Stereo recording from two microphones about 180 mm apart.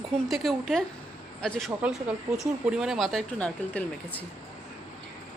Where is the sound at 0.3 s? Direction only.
Centre (ahead or behind).